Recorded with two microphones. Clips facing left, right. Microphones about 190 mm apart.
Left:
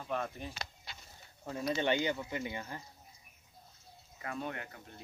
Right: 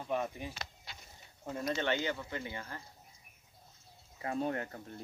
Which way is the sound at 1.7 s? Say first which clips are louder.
Left 2 dB; 15° left (ahead or behind).